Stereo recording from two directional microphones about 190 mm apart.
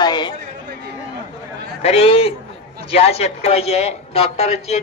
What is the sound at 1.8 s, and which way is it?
A man's voice, 30° left (ahead or behind).